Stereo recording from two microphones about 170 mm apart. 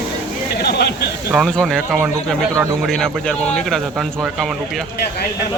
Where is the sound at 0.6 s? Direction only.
70° left (ahead or behind).